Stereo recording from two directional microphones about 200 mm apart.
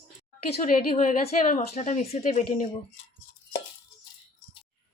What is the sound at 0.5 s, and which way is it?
A woman's voice, 40° left (ahead or behind).